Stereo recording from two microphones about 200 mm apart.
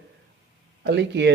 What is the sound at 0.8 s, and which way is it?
Speech, 60° right (ahead or behind).